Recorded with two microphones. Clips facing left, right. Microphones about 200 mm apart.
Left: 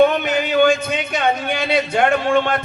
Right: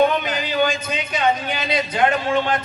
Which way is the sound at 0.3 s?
50° left (ahead or behind).